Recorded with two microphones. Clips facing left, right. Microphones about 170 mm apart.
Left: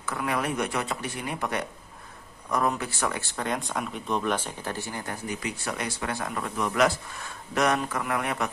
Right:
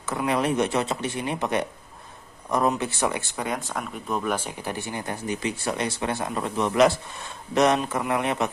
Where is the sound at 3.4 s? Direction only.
5° right (ahead or behind).